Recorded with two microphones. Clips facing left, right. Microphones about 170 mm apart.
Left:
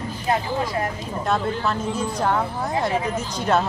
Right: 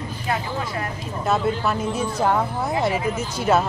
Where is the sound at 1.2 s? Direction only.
5° right (ahead or behind).